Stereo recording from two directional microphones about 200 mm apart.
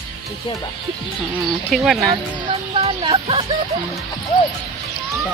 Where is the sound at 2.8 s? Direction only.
25° right (ahead or behind).